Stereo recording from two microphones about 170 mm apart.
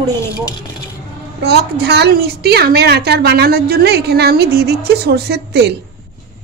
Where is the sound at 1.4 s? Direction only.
70° right (ahead or behind).